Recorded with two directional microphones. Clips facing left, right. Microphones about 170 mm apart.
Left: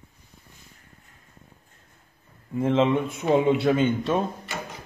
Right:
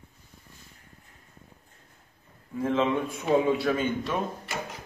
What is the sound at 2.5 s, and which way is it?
A man's voice, 25° left (ahead or behind).